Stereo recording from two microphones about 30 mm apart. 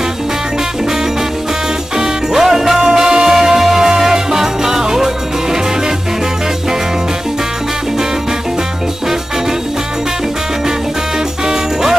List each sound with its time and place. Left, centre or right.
2.0 s music: centre